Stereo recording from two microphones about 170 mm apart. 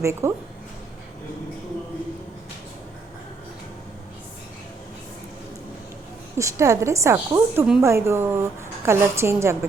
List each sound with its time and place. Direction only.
0.0 s a woman's voice: 15° right (ahead or behind)
6.3 s a woman's voice: 15° right (ahead or behind)